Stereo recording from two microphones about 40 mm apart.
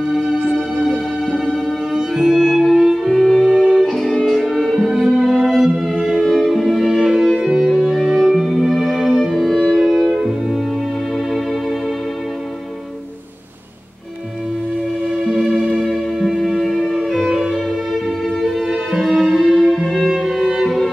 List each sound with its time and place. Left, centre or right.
2.3 s music: centre
15.8 s music: centre
18.4 s music: centre